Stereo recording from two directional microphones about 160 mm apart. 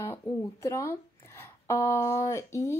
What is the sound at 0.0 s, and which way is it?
Speech, 15° left (ahead or behind).